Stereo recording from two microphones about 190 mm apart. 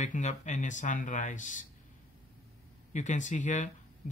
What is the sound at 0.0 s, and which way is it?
Speech, 40° left (ahead or behind).